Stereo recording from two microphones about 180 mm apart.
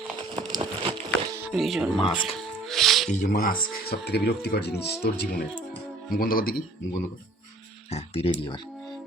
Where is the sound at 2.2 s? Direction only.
Centre (ahead or behind).